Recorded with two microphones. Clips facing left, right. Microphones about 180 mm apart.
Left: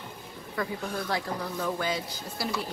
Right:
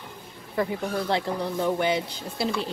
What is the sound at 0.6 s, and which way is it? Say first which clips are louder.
A woman's voice: right 6 dB; 25° right (ahead or behind).